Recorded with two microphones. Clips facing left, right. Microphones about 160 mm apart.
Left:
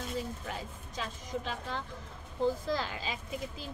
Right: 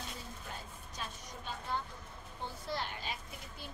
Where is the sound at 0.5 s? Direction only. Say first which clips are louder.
Left 6 dB; 90° left.